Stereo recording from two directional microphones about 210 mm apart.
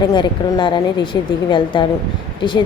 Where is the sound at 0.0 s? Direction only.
20° left (ahead or behind).